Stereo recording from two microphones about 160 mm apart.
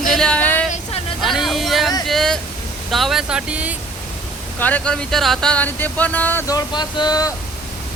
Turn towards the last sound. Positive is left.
turn(degrees=25)  # may be behind; listen again after turning